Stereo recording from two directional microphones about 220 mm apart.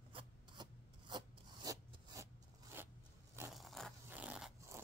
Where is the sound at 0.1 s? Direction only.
20° right (ahead or behind).